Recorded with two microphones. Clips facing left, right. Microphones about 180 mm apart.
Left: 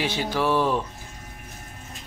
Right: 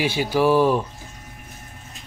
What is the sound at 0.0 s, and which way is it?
Speech, 10° right (ahead or behind).